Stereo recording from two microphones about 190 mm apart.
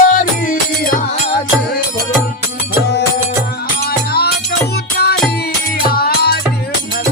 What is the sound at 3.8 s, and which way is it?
Music, 55° left (ahead or behind).